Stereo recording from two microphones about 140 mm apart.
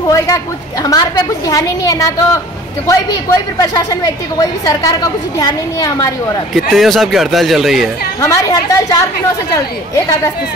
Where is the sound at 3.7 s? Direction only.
30° left (ahead or behind).